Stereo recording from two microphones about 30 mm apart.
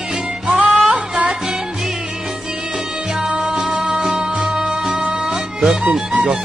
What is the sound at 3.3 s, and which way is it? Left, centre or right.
Music, right.